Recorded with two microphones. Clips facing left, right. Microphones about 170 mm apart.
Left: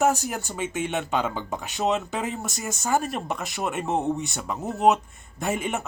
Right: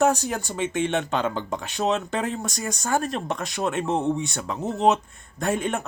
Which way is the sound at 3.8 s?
15° left (ahead or behind).